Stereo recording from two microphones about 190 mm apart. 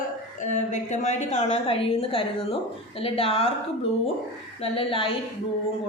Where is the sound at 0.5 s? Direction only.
40° left (ahead or behind).